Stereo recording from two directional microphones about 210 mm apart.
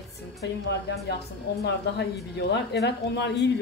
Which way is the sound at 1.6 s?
55° left (ahead or behind).